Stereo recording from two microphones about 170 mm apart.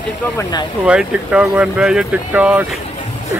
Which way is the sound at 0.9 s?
5° right (ahead or behind).